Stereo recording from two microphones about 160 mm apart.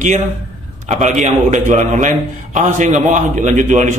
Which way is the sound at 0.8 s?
45° right (ahead or behind).